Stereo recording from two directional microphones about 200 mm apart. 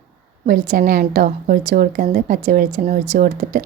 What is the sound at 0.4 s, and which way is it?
A woman's voice, 45° right (ahead or behind).